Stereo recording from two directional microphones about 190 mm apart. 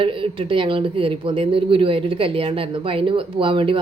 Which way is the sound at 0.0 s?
30° right (ahead or behind).